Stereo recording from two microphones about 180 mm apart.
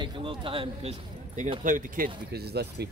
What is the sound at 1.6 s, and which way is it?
Speech, 45° right (ahead or behind).